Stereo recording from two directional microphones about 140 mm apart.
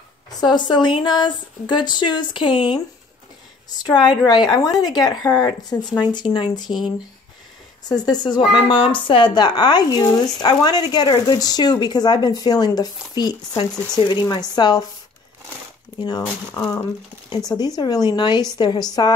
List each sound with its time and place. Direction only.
0.3 s a woman's voice: 30° left (ahead or behind)
16.5 s a woman's voice: 25° left (ahead or behind)